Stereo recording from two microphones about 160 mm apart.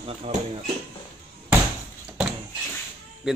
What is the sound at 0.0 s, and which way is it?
Speech, 40° right (ahead or behind).